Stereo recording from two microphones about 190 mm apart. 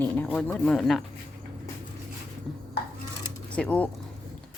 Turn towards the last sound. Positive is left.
turn(degrees=5)  # may be behind; listen again after turning